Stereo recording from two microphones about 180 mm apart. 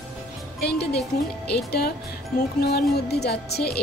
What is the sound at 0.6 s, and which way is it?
A woman's voice, 65° left (ahead or behind).